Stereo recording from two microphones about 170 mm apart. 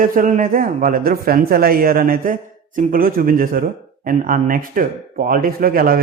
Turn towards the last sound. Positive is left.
turn(degrees=-60)  # may be behind; listen again after turning